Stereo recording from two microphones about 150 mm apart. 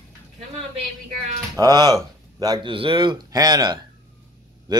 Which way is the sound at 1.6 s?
25° right (ahead or behind).